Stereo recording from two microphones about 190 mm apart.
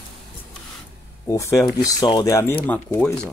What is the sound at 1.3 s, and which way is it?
Speech, 15° left (ahead or behind).